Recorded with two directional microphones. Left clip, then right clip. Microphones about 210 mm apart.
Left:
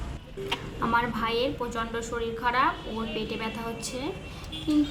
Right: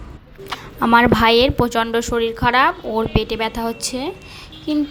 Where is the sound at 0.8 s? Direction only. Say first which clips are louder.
Right 14 dB; 45° right (ahead or behind).